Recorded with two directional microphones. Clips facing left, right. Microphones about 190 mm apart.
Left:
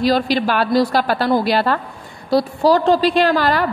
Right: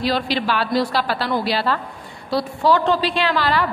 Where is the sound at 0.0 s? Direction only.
45° left (ahead or behind).